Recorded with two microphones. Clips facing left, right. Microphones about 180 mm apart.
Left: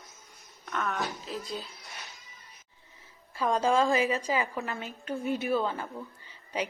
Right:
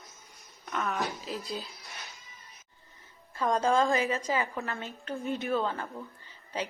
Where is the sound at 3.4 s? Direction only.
Centre (ahead or behind).